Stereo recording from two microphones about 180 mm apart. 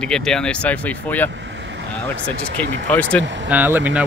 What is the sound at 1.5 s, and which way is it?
Vehicle, 80° right.